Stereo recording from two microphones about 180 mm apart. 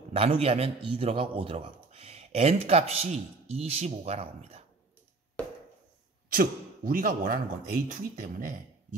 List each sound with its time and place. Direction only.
0.1 s a man's voice: 30° right (ahead or behind)
6.3 s speech: 55° right (ahead or behind)